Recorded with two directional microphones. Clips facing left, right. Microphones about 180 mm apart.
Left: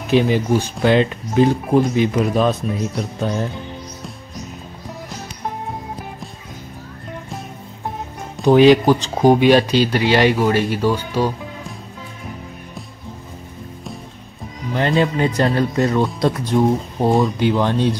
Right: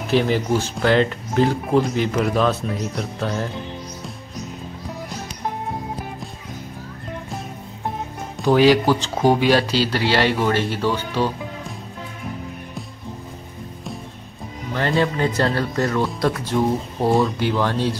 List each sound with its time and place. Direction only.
0.1 s speech: 15° left (ahead or behind)
8.5 s speech: 20° left (ahead or behind)
14.7 s speech: 20° left (ahead or behind)